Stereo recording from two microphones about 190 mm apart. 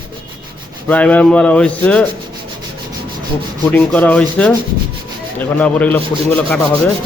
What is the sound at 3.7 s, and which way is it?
Sanding, 10° left (ahead or behind).